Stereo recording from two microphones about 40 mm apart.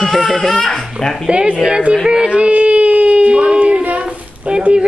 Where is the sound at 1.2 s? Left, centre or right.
Right.